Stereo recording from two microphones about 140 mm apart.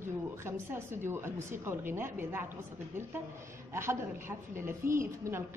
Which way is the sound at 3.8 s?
15° right (ahead or behind).